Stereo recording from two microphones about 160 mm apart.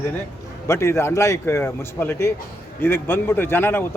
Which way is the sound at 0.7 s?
15° left (ahead or behind).